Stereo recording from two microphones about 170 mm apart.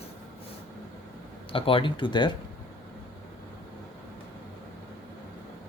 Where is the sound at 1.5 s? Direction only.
30° left (ahead or behind).